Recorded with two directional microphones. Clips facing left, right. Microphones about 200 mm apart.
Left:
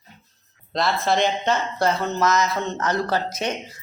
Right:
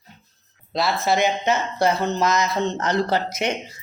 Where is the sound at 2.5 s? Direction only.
25° right (ahead or behind).